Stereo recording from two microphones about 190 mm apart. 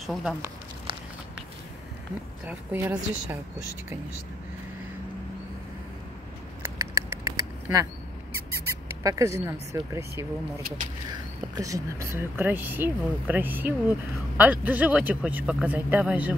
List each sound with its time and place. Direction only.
0.0 s speech: centre (ahead or behind)
2.4 s speech: 10° right (ahead or behind)
6.6 s a sound: 15° right (ahead or behind)
9.0 s speech: 15° right (ahead or behind)
11.5 s speech: 15° right (ahead or behind)